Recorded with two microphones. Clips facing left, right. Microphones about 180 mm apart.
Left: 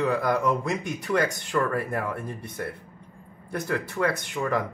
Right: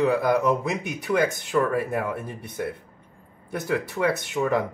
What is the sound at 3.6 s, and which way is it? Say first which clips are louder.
Speech: right 3 dB; 5° right (ahead or behind).